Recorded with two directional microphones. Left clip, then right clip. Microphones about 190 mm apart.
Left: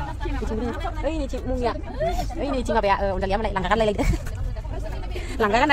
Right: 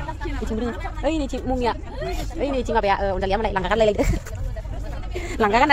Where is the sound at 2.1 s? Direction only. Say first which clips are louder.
Right 1 dB; 10° right (ahead or behind).